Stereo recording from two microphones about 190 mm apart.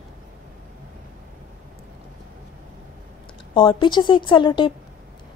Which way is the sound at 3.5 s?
25° left (ahead or behind).